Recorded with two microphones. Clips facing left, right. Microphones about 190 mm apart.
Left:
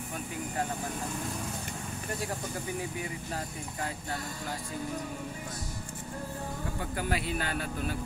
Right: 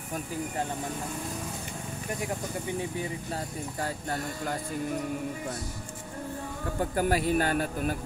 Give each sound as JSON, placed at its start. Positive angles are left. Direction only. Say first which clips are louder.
{"t": 6.8, "sound": "speech", "louder": "right 8 dB", "side_deg": -45}